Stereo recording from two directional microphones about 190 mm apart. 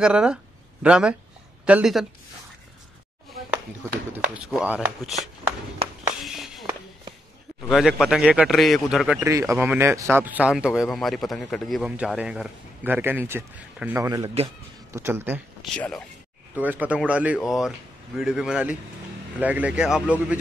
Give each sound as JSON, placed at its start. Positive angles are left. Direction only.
{"t": 0.0, "sound": "speech", "side_deg": -5}
{"t": 4.5, "sound": "speech", "side_deg": 0}
{"t": 6.2, "sound": "a sound", "side_deg": 0}
{"t": 7.6, "sound": "speech", "side_deg": 0}
{"t": 9.3, "sound": "speech", "side_deg": -15}
{"t": 15.7, "sound": "speech", "side_deg": 5}
{"t": 16.5, "sound": "speech", "side_deg": -10}